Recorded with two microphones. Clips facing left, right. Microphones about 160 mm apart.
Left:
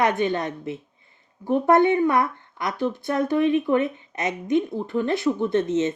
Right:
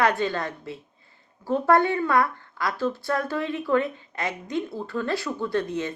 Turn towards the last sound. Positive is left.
turn(degrees=20)  # may be behind; listen again after turning